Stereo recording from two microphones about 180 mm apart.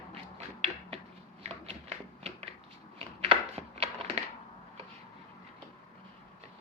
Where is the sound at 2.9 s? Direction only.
30° right (ahead or behind).